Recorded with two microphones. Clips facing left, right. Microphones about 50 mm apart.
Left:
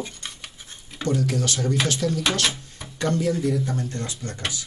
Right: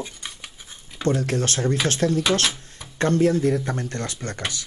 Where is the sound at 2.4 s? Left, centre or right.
Centre.